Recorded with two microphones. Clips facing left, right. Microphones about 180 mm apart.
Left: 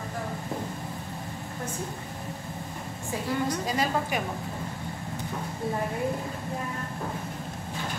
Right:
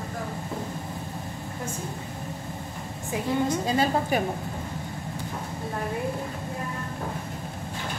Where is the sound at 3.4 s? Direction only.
25° right (ahead or behind).